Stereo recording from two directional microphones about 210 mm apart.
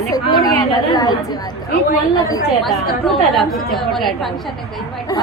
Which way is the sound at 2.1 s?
15° left (ahead or behind).